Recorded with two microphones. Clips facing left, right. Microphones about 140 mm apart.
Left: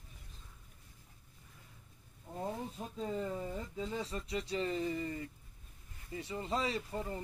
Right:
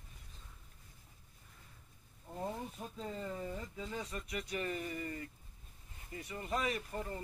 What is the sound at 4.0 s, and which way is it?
Speech, 30° left (ahead or behind).